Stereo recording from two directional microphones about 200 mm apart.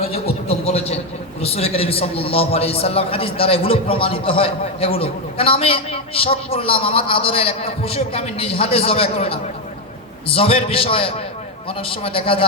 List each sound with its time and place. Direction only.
0.0 s a man's voice: 30° left (ahead or behind)